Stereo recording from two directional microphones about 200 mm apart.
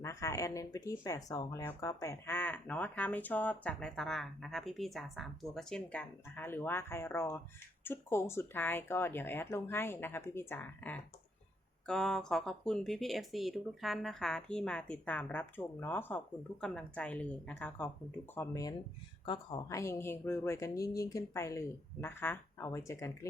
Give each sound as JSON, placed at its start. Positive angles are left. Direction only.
{"t": 0.0, "sound": "speech", "side_deg": 15}